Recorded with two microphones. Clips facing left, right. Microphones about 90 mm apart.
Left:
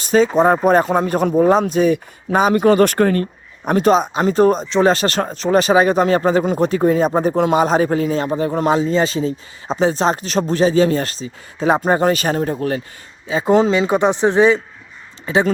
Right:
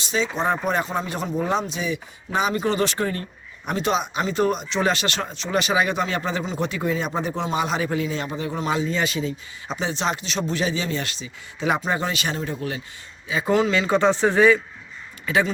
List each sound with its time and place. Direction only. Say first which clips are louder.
0.0 s speech: left 10 dB; 45° left (ahead or behind)
3.7 s a man's voice: left 9 dB; 45° left (ahead or behind)
13.2 s a man's voice: left 6 dB; 35° left (ahead or behind)
13.7 s speech: left 4 dB; 20° left (ahead or behind)